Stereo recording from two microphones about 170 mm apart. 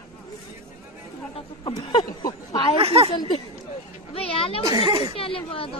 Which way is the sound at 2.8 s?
35° right (ahead or behind).